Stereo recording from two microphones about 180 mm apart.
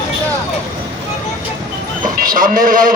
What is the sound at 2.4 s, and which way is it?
Speech, 50° right (ahead or behind).